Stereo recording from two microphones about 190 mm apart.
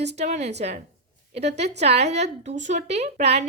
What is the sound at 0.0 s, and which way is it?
A woman's voice, 35° right (ahead or behind).